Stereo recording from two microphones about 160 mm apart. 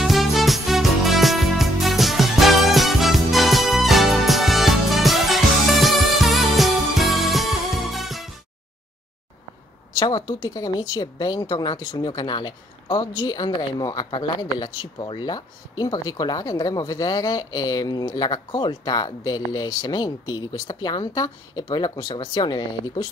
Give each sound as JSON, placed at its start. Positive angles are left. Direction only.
{"t": 0.0, "sound": "music", "side_deg": 0}
{"t": 9.9, "sound": "speech", "side_deg": 25}